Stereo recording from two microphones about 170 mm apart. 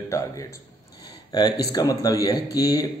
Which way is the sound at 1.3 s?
25° left (ahead or behind).